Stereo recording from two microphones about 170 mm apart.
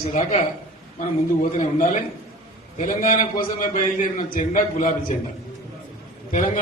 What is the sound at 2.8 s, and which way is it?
A man's voice, 50° left (ahead or behind).